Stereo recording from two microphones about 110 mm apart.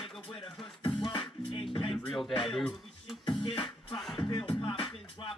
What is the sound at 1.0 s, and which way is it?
Music, 50° left (ahead or behind).